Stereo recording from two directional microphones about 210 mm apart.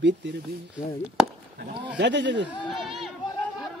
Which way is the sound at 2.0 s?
55° right (ahead or behind).